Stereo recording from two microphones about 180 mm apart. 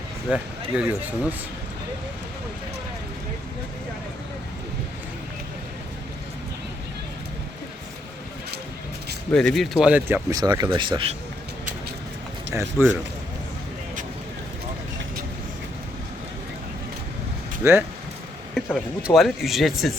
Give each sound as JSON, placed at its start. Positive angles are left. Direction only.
{"t": 0.3, "sound": "speech", "side_deg": -5}
{"t": 9.3, "sound": "speech", "side_deg": 5}
{"t": 12.5, "sound": "speech", "side_deg": -15}
{"t": 17.6, "sound": "speech", "side_deg": -10}
{"t": 18.5, "sound": "speech", "side_deg": 0}